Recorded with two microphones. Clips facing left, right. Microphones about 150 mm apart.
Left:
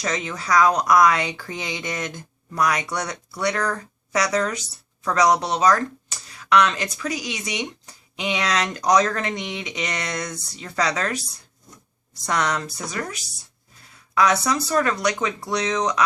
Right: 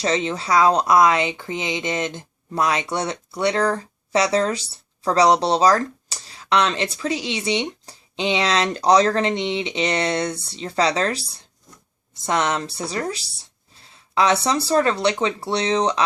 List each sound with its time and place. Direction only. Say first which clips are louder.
0.0 s speech: right 5 dB; 30° right (ahead or behind)